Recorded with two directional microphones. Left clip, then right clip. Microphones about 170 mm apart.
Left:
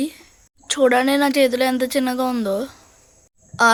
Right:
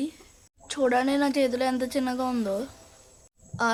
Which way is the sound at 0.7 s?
30° left (ahead or behind).